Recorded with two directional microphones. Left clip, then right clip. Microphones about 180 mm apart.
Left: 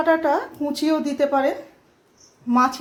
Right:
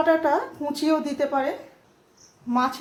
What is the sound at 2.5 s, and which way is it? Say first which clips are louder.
Speech: left 5 dB; 35° left (ahead or behind).